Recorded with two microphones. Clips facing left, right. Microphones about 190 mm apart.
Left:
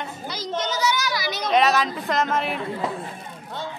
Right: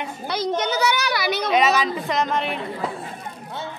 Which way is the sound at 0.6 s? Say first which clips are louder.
Left 2 dB; 60° right (ahead or behind).